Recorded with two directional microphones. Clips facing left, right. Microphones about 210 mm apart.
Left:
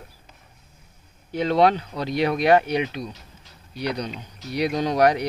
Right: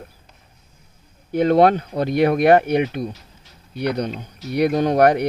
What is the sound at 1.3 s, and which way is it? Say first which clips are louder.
Speech: right 5 dB; 50° right (ahead or behind).